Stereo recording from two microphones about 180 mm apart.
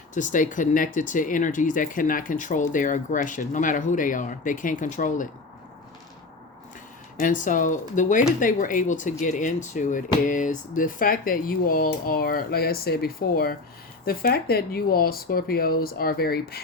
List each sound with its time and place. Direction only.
0.1 s speech: 45° left (ahead or behind)
7.2 s speech: 45° left (ahead or behind)